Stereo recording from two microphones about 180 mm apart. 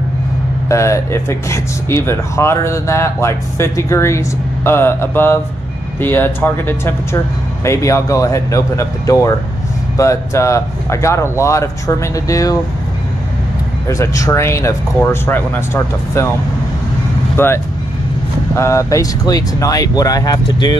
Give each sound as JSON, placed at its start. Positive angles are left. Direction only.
{"t": 0.7, "sound": "speech", "side_deg": 15}
{"t": 13.8, "sound": "speech", "side_deg": 15}
{"t": 17.4, "sound": "speech", "side_deg": 15}